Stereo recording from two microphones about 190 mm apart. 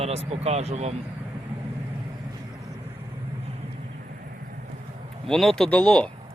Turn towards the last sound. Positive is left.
turn(degrees=5)  # may be behind; listen again after turning